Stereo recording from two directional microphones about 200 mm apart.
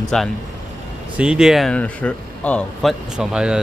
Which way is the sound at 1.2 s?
5° right (ahead or behind).